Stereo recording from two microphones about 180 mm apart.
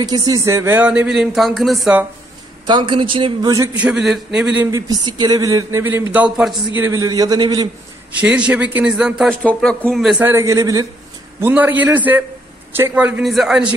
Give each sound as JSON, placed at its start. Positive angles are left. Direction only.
{"t": 0.0, "sound": "speech", "side_deg": -20}
{"t": 2.6, "sound": "a man's voice", "side_deg": -25}
{"t": 3.7, "sound": "a man's voice", "side_deg": -5}
{"t": 4.6, "sound": "speech", "side_deg": -20}
{"t": 6.8, "sound": "a man's voice", "side_deg": -20}
{"t": 8.2, "sound": "a man's voice", "side_deg": -5}
{"t": 10.2, "sound": "speech", "side_deg": -15}